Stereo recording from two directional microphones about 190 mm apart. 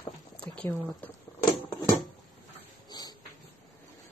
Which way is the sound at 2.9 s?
20° left (ahead or behind).